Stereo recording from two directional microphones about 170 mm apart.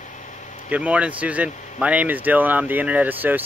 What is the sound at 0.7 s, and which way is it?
Speech, 5° right (ahead or behind).